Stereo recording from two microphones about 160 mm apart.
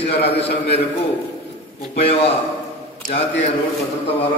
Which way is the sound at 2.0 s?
35° left (ahead or behind).